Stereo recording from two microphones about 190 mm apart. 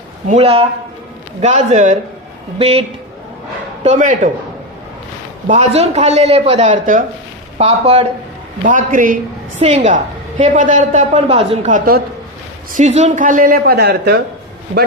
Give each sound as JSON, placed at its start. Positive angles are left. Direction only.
{"t": 0.3, "sound": "a woman's voice", "side_deg": -30}
{"t": 3.8, "sound": "a woman's voice", "side_deg": -40}
{"t": 5.5, "sound": "a woman's voice", "side_deg": -35}
{"t": 7.6, "sound": "a woman's voice", "side_deg": -30}
{"t": 8.6, "sound": "a woman's voice", "side_deg": -45}
{"t": 9.6, "sound": "a woman's voice", "side_deg": -30}